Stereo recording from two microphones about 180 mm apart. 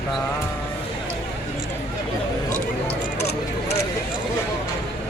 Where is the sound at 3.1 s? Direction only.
65° left (ahead or behind).